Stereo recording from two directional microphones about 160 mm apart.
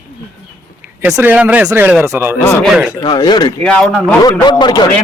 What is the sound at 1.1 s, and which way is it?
Speech, 10° right (ahead or behind).